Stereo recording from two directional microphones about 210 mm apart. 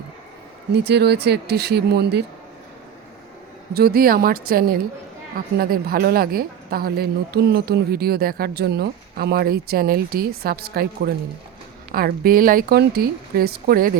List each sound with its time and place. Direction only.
0.7 s speech: 50° right (ahead or behind)
3.8 s speech: 45° right (ahead or behind)